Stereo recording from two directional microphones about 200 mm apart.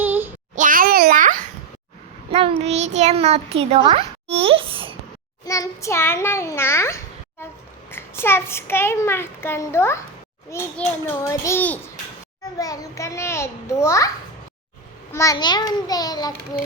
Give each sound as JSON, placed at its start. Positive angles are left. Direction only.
{"t": 0.0, "sound": "child singing", "side_deg": -10}
{"t": 0.5, "sound": "a sound", "side_deg": -40}
{"t": 2.3, "sound": "a child's voice", "side_deg": -30}
{"t": 5.5, "sound": "a child's voice", "side_deg": 15}
{"t": 15.1, "sound": "a child's voice", "side_deg": 15}